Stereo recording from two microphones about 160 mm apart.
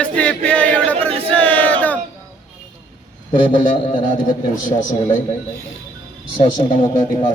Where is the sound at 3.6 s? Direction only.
55° left (ahead or behind).